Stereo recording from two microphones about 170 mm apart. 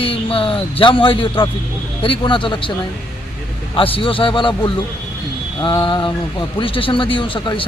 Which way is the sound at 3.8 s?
30° left (ahead or behind).